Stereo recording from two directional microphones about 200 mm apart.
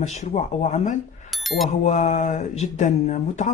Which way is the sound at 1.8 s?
35° left (ahead or behind).